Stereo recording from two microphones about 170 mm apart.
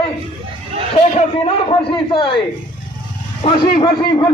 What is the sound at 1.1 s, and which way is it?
A man's voice, 35° left (ahead or behind).